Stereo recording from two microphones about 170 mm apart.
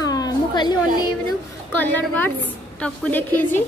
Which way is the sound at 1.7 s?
10° left (ahead or behind).